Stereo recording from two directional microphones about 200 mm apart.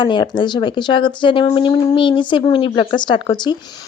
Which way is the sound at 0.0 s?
25° left (ahead or behind).